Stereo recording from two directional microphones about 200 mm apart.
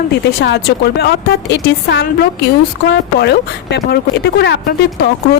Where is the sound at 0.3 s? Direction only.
55° left (ahead or behind).